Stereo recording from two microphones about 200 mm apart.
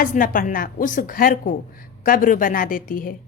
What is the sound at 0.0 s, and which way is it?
A woman's voice, 45° left (ahead or behind).